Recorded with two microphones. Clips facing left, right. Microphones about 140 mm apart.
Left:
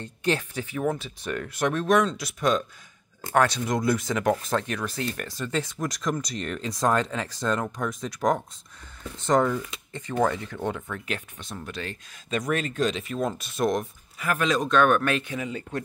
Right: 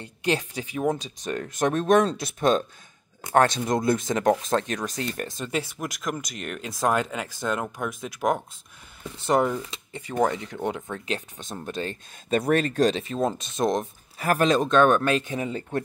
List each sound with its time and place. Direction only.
0.0 s speech: 15° right (ahead or behind)
1.3 s speech: 40° right (ahead or behind)
1.8 s speech: 25° right (ahead or behind)
5.6 s speech: 5° right (ahead or behind)
9.2 s speech: 15° right (ahead or behind)
10.9 s speech: 25° right (ahead or behind)
12.4 s speech: 35° right (ahead or behind)
13.0 s speech: 25° right (ahead or behind)
14.1 s speech: 35° right (ahead or behind)
14.6 s speech: 25° right (ahead or behind)